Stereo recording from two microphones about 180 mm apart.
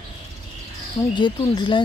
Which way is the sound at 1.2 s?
25° left (ahead or behind).